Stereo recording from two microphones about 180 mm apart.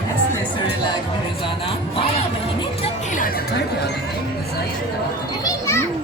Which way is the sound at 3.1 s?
55° left (ahead or behind).